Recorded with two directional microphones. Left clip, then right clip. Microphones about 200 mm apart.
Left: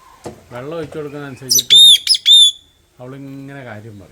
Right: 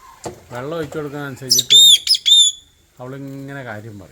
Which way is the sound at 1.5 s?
15° left (ahead or behind).